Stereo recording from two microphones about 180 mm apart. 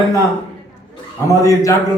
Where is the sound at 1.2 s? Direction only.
15° left (ahead or behind).